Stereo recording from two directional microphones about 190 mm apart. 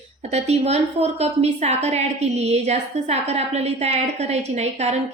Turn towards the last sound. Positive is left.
turn(degrees=-35)  # may be behind; listen again after turning